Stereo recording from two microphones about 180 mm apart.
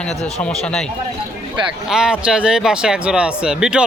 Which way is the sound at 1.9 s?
5° right (ahead or behind).